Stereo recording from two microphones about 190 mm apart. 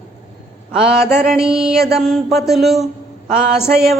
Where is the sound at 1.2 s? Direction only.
Centre (ahead or behind).